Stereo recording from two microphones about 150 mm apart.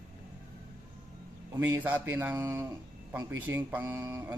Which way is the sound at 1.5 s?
20° right (ahead or behind).